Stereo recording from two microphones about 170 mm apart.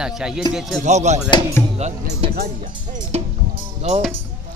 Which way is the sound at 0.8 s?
45° right (ahead or behind).